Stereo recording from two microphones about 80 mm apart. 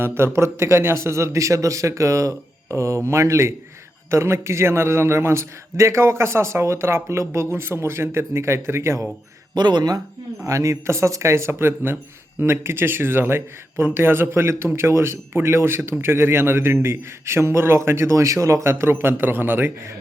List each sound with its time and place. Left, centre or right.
0.0 s a man's voice: right
9.6 s speech: right
10.4 s a man's voice: right